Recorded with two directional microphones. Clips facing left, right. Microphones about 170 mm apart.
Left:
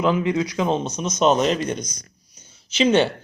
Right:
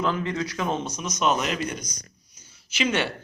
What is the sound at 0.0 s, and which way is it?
A woman's voice, 10° left (ahead or behind).